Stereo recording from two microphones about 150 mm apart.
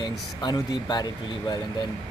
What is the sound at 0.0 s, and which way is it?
Speech, 25° left (ahead or behind).